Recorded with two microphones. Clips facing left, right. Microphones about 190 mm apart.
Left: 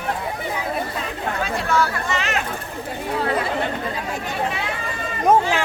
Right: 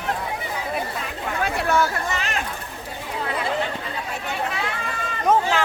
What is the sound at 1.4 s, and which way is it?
Chatter, 60° right (ahead or behind).